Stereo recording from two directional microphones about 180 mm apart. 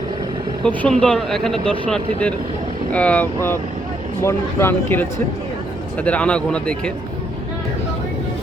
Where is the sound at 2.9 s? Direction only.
5° left (ahead or behind).